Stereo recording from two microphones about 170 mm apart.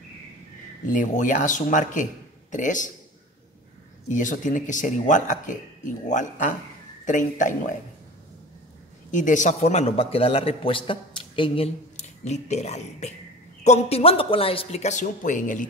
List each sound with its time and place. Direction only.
0.8 s speech: 50° left (ahead or behind)
4.1 s speech: 50° left (ahead or behind)
9.1 s a man's voice: 50° left (ahead or behind)